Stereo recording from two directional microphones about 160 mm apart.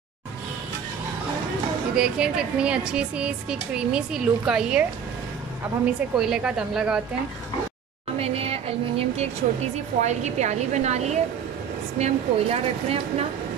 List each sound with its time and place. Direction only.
2.0 s speech: 5° right (ahead or behind)
6.1 s speech: 5° right (ahead or behind)
8.2 s a sound: 40° right (ahead or behind)
10.0 s a woman's voice: 45° right (ahead or behind)